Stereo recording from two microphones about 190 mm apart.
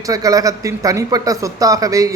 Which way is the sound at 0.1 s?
20° right (ahead or behind).